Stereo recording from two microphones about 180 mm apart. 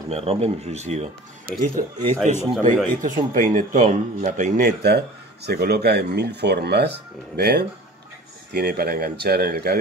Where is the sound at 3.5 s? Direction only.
45° right (ahead or behind).